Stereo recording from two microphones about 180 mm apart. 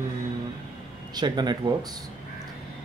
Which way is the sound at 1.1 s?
25° right (ahead or behind).